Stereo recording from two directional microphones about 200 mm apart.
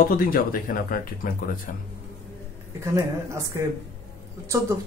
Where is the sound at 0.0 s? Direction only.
45° left (ahead or behind).